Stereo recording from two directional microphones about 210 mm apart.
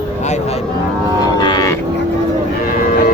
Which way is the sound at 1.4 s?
20° left (ahead or behind).